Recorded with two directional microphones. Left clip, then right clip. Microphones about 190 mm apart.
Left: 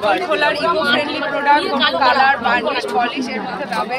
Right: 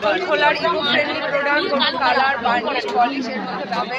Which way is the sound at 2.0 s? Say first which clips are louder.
Left 5 dB; 15° right (ahead or behind).